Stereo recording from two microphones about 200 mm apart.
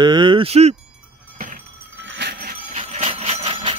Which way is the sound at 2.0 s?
60° right (ahead or behind).